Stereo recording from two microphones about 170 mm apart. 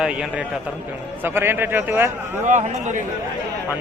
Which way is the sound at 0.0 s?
5° right (ahead or behind).